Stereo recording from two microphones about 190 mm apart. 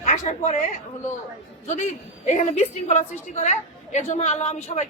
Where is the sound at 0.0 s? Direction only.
40° left (ahead or behind).